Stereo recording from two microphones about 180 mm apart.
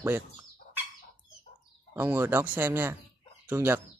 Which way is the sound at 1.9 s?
15° right (ahead or behind).